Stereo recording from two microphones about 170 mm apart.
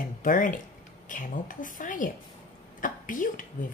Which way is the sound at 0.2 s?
50° left (ahead or behind).